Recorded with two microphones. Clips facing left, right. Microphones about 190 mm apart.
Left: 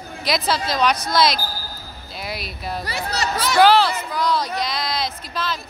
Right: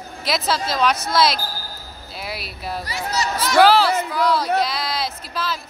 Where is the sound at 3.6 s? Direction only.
5° right (ahead or behind).